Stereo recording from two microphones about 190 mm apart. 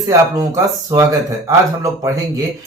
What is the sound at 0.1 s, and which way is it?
Speech, 15° right (ahead or behind).